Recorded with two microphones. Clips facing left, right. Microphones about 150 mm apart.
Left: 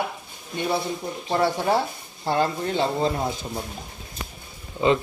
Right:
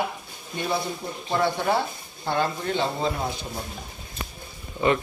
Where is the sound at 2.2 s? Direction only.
35° left (ahead or behind).